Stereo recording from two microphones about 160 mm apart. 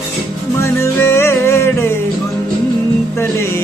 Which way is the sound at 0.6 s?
15° left (ahead or behind).